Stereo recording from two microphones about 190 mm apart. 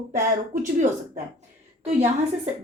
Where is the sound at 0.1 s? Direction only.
40° right (ahead or behind).